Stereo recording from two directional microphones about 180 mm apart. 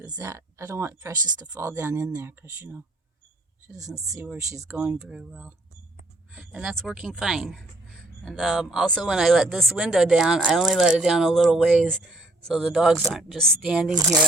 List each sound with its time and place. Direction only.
0.0 s speech: 20° right (ahead or behind); by 13.9 s centre (ahead or behind)
13.9 s speech: 20° right (ahead or behind)